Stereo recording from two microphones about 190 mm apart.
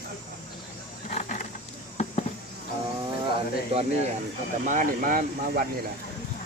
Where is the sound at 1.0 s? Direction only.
40° left (ahead or behind).